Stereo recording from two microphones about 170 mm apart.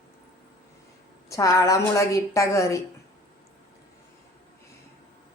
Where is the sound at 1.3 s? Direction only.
20° left (ahead or behind).